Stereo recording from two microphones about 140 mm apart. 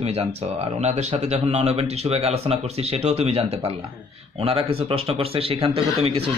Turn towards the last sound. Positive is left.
turn(degrees=-45)  # may be behind; listen again after turning